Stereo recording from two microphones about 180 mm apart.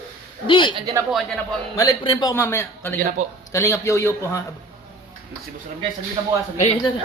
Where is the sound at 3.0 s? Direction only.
50° right (ahead or behind).